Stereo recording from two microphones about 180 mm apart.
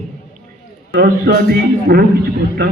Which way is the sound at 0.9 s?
55° right (ahead or behind).